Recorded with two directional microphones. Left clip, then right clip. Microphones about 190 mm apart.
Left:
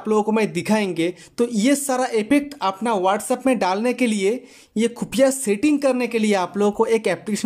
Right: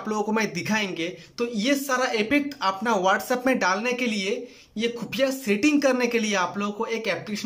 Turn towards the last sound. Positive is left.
turn(degrees=35)  # may be behind; listen again after turning